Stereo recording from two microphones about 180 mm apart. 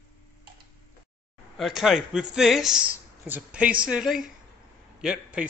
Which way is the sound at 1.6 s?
Centre (ahead or behind).